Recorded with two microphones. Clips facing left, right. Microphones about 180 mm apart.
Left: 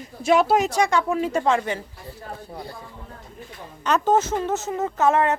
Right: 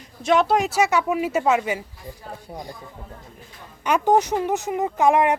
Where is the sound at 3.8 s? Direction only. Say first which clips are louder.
Right 1 dB; 15° right (ahead or behind).